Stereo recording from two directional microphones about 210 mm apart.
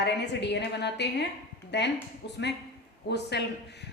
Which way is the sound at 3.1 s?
55° left (ahead or behind).